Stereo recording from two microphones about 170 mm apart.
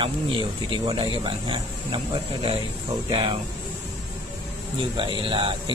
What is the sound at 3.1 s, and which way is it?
Speech, 30° right (ahead or behind).